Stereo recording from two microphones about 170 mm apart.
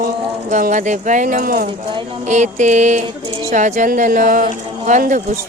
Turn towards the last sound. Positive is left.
turn(degrees=-50)  # may be behind; listen again after turning